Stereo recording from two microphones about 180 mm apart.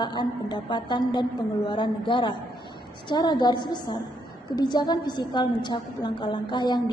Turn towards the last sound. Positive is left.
turn(degrees=25)  # may be behind; listen again after turning